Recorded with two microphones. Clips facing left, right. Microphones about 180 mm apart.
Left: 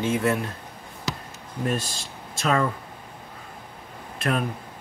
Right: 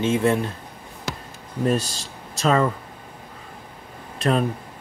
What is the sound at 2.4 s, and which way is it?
Speech, 35° right (ahead or behind).